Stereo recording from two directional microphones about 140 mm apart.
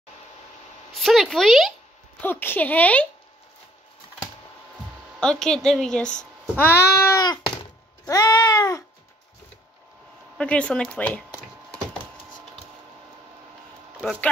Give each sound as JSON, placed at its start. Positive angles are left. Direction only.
{"t": 0.9, "sound": "speech", "side_deg": 0}
{"t": 2.2, "sound": "speech", "side_deg": 15}
{"t": 5.2, "sound": "a child's voice", "side_deg": 5}
{"t": 10.3, "sound": "speech", "side_deg": 10}